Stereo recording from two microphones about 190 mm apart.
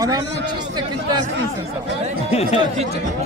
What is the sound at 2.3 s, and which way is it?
Speech, 35° left (ahead or behind).